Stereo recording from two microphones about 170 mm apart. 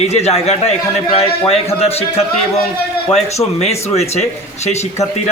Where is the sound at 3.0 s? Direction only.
40° left (ahead or behind).